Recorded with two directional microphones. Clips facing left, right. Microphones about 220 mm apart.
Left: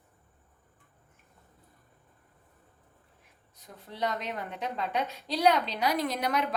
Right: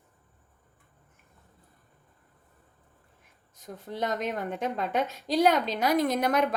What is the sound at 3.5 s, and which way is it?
A woman's voice, 45° right (ahead or behind).